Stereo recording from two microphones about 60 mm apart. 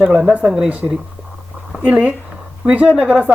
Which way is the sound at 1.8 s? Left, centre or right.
Right.